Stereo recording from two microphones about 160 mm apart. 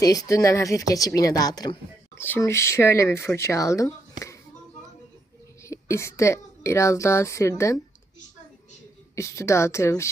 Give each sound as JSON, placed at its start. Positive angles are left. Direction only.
{"t": 0.0, "sound": "a woman's voice", "side_deg": 20}
{"t": 2.1, "sound": "speech", "side_deg": 15}
{"t": 5.6, "sound": "a woman's voice", "side_deg": 20}
{"t": 9.1, "sound": "speech", "side_deg": 20}